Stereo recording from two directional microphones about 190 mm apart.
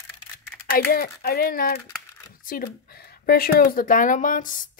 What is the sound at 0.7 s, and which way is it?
A woman's voice, 50° left (ahead or behind).